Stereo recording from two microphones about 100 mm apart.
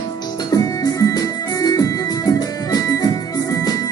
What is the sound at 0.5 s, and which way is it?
Music, 35° left (ahead or behind).